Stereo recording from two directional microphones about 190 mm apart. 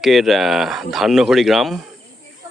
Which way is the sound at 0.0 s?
Centre (ahead or behind).